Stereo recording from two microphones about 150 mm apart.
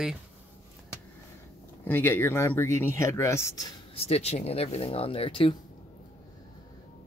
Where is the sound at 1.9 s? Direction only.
15° left (ahead or behind).